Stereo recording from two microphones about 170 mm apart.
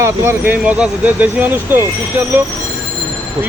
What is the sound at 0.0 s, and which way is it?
Speech, 15° right (ahead or behind).